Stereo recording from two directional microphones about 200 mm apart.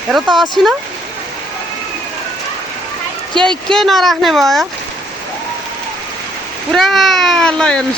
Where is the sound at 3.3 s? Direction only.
25° right (ahead or behind).